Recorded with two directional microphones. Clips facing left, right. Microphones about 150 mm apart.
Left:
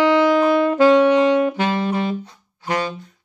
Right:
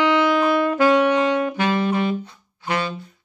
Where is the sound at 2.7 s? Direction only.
40° left (ahead or behind).